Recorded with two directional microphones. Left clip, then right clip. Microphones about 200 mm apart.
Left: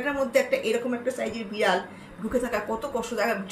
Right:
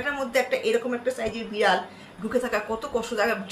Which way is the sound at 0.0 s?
15° right (ahead or behind).